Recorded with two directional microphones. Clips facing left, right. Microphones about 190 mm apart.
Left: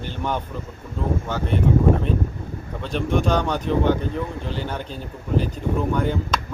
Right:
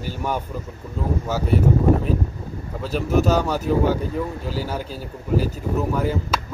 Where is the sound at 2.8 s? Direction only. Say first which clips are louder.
Right 2 dB; 5° right (ahead or behind).